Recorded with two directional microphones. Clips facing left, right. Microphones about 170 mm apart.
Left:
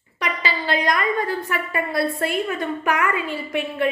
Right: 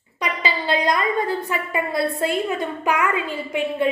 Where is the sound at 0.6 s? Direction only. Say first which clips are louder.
Right 1 dB; 25° right (ahead or behind).